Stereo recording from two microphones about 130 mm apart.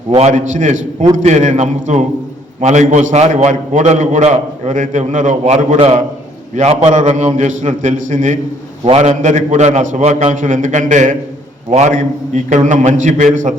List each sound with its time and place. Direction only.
0.3 s a man's voice: 70° right (ahead or behind)
8.8 s a man's voice: 50° right (ahead or behind); by 11.2 s 75° right (ahead or behind)
11.7 s a man's voice: 65° right (ahead or behind)